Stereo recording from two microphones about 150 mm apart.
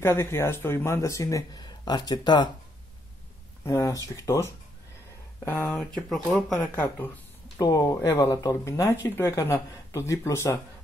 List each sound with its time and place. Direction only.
0.0 s speech: 15° left (ahead or behind)
3.6 s speech: 20° left (ahead or behind)
5.9 s speech: centre (ahead or behind)
6.7 s speech: 15° left (ahead or behind)
7.5 s speech: 25° left (ahead or behind)